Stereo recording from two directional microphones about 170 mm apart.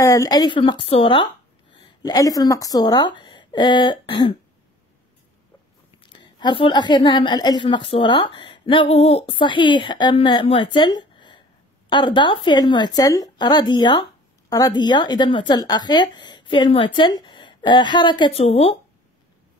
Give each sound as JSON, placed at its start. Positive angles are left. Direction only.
{"t": 0.0, "sound": "speech", "side_deg": 20}
{"t": 5.9, "sound": "a woman's voice", "side_deg": 30}